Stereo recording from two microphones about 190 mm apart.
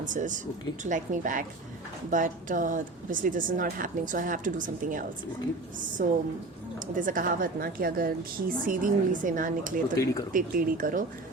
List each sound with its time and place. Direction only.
0.0 s speech: 40° right (ahead or behind)